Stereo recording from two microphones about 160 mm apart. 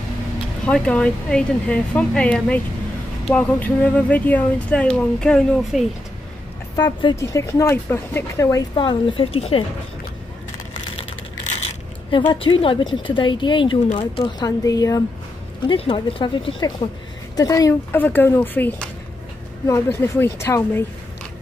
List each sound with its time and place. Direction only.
0.7 s speech: 5° left (ahead or behind)
6.8 s speech: 25° left (ahead or behind)
8.7 s speech: 30° left (ahead or behind)
11.5 s coin: 40° left (ahead or behind)
12.3 s a woman's voice: 30° left (ahead or behind)
15.6 s speech: 35° left (ahead or behind)
17.4 s speech: 20° left (ahead or behind)